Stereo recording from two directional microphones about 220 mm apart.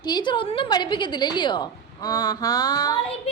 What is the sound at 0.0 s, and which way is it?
A woman's voice, 20° left (ahead or behind).